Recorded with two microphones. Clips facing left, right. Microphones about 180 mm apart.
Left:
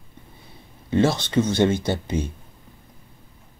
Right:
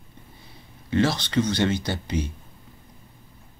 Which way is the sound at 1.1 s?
50° left (ahead or behind).